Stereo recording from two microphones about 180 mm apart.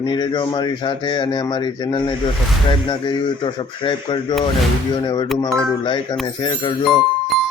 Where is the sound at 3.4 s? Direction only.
25° left (ahead or behind).